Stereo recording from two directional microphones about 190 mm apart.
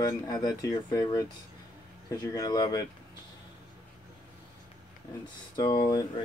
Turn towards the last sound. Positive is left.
turn(degrees=20)  # may be behind; listen again after turning